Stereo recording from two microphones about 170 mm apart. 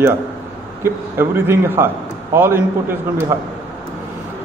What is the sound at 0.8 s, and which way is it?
A man's voice, 15° right (ahead or behind).